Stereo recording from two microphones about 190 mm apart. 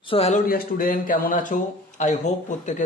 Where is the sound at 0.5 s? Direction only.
50° left (ahead or behind).